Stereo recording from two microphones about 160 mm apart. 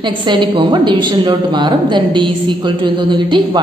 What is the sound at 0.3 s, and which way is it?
A woman's voice, 30° right (ahead or behind).